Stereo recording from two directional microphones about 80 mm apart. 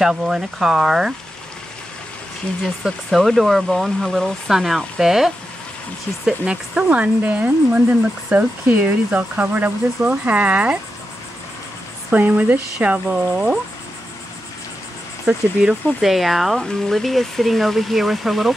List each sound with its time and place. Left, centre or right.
0.0 s speech: centre
2.6 s speech: centre
12.1 s speech: right
15.2 s speech: centre